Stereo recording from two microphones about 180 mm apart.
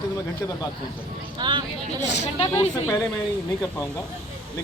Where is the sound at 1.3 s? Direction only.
25° right (ahead or behind).